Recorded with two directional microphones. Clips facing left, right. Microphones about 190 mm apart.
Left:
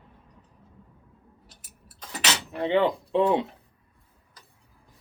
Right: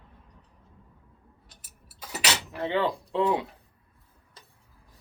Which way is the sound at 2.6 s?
20° left (ahead or behind).